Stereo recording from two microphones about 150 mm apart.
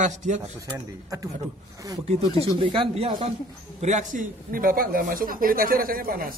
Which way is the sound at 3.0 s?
40° right (ahead or behind).